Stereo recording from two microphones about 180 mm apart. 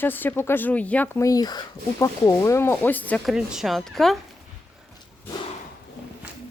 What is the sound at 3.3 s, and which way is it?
Speech, 5° right (ahead or behind).